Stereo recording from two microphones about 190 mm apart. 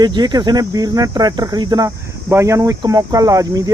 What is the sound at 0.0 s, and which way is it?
Speech, 20° right (ahead or behind).